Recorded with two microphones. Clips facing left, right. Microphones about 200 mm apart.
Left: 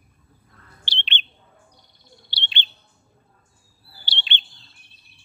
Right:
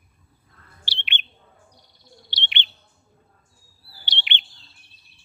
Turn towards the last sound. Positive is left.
turn(degrees=-20)  # may be behind; listen again after turning